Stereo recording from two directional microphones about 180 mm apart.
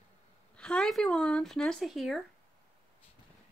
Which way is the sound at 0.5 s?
5° left (ahead or behind).